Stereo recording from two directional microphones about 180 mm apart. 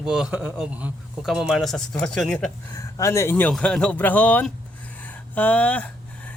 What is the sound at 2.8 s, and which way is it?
Speech, 15° left (ahead or behind).